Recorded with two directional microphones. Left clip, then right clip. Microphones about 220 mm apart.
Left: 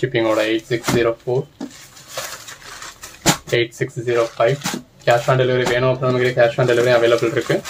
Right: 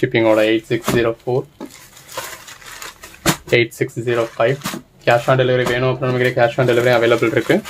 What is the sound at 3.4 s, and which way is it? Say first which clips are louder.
Speech: right 3 dB; 45° right (ahead or behind).